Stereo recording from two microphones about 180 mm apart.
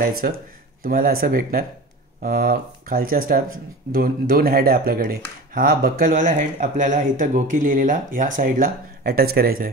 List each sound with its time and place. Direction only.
0.8 s speech: 55° right (ahead or behind)